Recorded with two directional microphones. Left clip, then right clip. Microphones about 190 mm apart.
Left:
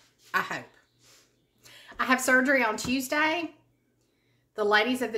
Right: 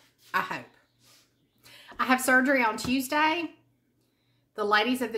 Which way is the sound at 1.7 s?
5° right (ahead or behind).